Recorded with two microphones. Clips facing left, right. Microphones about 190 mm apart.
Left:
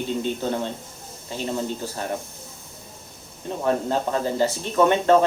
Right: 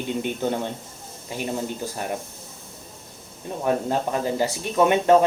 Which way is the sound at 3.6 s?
15° right (ahead or behind).